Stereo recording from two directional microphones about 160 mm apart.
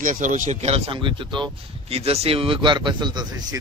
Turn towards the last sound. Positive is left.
turn(degrees=-25)  # may be behind; listen again after turning